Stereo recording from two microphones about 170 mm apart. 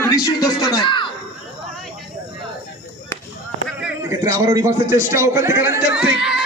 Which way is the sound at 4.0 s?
20° right (ahead or behind).